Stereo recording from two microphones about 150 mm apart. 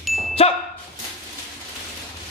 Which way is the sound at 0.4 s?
40° left (ahead or behind).